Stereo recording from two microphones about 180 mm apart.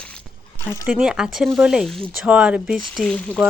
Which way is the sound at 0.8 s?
5° right (ahead or behind).